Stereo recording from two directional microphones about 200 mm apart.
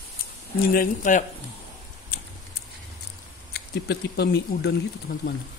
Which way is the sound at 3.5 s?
55° left (ahead or behind).